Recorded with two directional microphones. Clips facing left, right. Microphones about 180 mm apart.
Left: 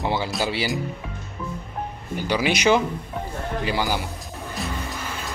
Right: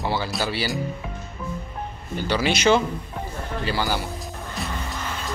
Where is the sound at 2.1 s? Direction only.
15° left (ahead or behind).